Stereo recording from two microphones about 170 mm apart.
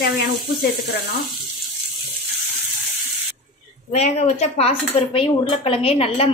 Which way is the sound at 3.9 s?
40° left (ahead or behind).